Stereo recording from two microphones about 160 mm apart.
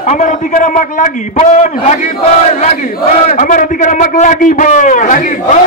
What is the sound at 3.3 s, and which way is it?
A man's voice, 55° left (ahead or behind).